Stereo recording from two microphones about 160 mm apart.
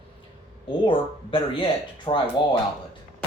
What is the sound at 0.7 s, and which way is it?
Speech, 35° left (ahead or behind).